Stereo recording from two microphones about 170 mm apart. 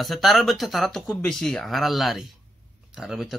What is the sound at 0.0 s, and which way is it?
Speech, centre (ahead or behind).